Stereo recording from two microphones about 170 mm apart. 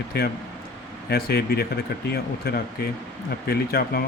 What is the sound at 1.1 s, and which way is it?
Speech, 70° left (ahead or behind).